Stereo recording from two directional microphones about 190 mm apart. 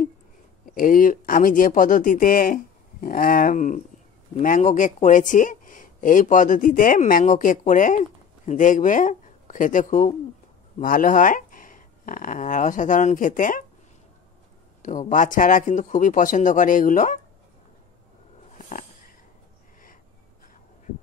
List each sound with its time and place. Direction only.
0.7 s speech: 45° left (ahead or behind)
14.8 s speech: 40° left (ahead or behind)